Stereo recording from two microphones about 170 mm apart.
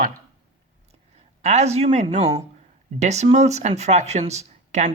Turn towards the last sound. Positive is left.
turn(degrees=-45)  # may be behind; listen again after turning